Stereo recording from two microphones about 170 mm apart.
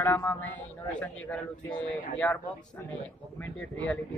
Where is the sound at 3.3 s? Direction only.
10° left (ahead or behind).